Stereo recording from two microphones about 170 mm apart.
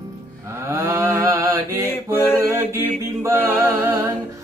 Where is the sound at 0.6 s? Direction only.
15° right (ahead or behind).